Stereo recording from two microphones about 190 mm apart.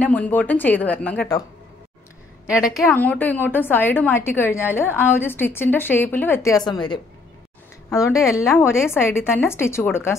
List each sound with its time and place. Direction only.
0.0 s a woman's voice: 10° left (ahead or behind)
2.6 s a woman's voice: centre (ahead or behind)